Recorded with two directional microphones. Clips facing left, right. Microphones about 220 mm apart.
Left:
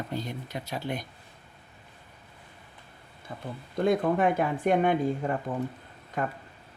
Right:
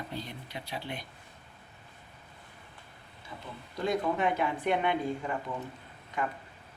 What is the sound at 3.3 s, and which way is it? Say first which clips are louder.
Speech: left 7 dB; 50° left (ahead or behind).